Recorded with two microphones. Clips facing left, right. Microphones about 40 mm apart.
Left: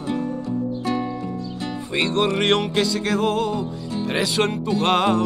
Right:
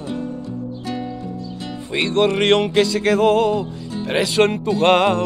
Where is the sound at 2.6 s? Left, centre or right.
Centre.